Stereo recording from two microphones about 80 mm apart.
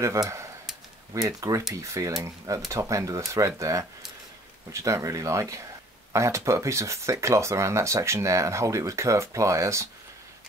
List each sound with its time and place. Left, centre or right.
0.0 s speech: right